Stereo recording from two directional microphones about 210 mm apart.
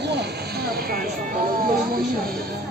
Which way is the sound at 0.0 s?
50° right (ahead or behind).